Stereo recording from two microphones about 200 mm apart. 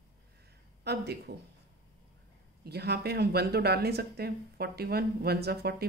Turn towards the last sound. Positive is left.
turn(degrees=-55)  # may be behind; listen again after turning